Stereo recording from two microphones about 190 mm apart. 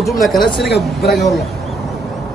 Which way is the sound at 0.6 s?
60° left (ahead or behind).